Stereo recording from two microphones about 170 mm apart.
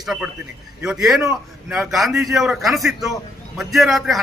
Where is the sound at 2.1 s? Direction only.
20° right (ahead or behind).